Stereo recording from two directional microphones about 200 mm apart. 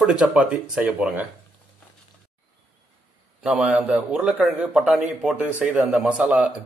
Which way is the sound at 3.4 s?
5° right (ahead or behind).